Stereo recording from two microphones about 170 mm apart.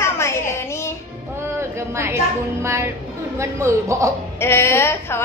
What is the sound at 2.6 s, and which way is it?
Speech, 15° right (ahead or behind).